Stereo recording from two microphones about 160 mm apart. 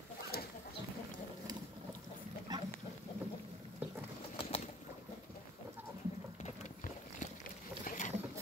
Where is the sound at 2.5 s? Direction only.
25° right (ahead or behind).